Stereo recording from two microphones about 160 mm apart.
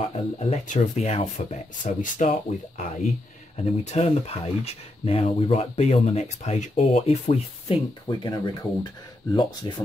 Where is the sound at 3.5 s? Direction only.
45° left (ahead or behind); by 9.7 s 25° left (ahead or behind).